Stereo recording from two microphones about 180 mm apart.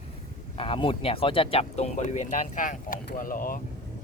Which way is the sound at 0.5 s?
30° left (ahead or behind).